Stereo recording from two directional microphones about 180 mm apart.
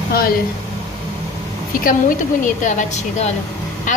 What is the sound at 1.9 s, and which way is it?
A woman's voice, 45° left (ahead or behind).